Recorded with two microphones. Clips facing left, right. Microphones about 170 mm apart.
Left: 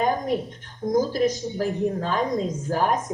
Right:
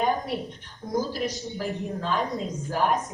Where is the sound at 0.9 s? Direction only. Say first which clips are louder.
Left 6 dB; 45° left (ahead or behind).